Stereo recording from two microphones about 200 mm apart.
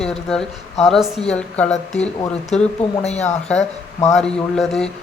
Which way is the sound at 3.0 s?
35° left (ahead or behind).